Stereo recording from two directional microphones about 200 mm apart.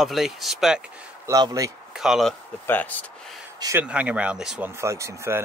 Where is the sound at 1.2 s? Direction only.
15° right (ahead or behind).